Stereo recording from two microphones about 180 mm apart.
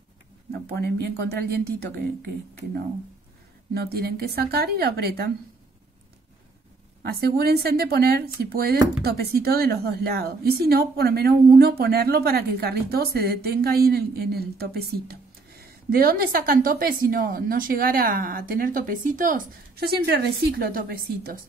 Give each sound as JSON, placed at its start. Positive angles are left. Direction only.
{"t": 0.5, "sound": "a woman's voice", "side_deg": -65}
{"t": 3.7, "sound": "a woman's voice", "side_deg": -60}
{"t": 7.0, "sound": "a woman's voice", "side_deg": -60}